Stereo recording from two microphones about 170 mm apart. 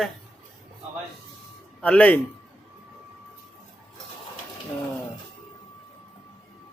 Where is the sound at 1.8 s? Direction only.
10° left (ahead or behind).